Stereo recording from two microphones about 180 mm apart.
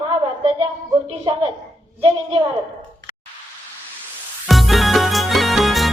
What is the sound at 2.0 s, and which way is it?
Speech, 30° right (ahead or behind).